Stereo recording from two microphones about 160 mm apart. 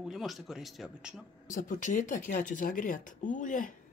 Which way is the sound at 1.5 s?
55° left (ahead or behind).